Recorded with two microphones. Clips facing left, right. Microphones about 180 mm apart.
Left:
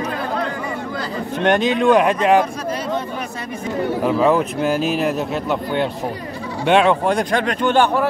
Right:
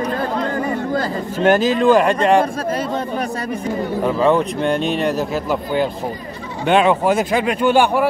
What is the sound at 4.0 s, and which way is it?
Speech, centre (ahead or behind).